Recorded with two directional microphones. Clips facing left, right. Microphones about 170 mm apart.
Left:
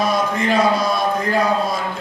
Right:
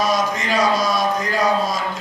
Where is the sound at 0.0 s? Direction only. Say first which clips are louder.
Left 1 dB; 55° left (ahead or behind).